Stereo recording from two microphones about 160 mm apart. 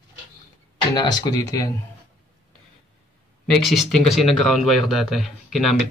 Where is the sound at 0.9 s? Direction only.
25° left (ahead or behind).